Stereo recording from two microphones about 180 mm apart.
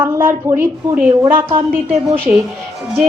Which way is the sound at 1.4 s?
30° right (ahead or behind).